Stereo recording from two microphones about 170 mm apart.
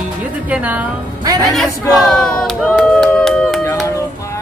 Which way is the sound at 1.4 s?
Centre (ahead or behind).